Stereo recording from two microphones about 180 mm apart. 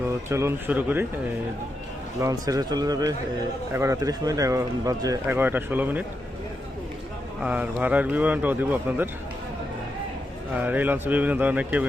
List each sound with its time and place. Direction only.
0.3 s a man's voice: 15° right (ahead or behind)
2.2 s a man's voice: 20° right (ahead or behind)
7.4 s a man's voice: 10° right (ahead or behind)
10.5 s a man's voice: 10° right (ahead or behind)